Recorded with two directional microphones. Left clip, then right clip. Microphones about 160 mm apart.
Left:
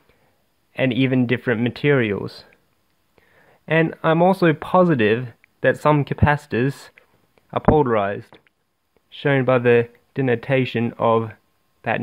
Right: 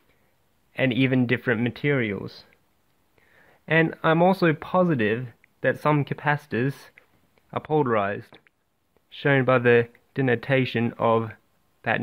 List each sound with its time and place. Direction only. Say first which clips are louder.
0.7 s speech: left 3 dB; 20° left (ahead or behind)
1.7 s speech: left 6 dB; 35° left (ahead or behind)
3.3 s speech: left 2 dB; 20° left (ahead or behind)
4.6 s speech: left 6 dB; 35° left (ahead or behind); by 12.0 s 15° left (ahead or behind)